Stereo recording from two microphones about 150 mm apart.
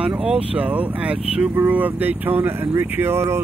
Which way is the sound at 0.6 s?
10° right (ahead or behind).